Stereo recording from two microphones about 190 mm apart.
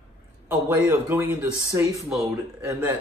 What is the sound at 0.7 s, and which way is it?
Speech, 10° right (ahead or behind).